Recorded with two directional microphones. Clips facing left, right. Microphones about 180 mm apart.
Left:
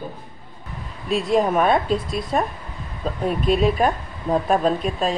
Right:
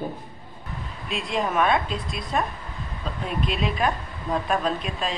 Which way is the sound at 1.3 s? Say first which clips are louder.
Left 4 dB; 40° left (ahead or behind).